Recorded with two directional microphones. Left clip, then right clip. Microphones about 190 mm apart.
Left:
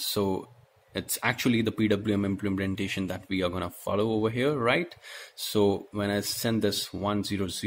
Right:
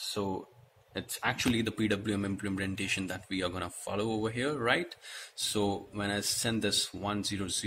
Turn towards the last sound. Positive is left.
turn(degrees=45)  # may be behind; listen again after turning